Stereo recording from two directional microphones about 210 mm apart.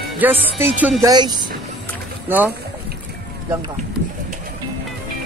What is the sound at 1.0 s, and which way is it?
Speech, 20° right (ahead or behind).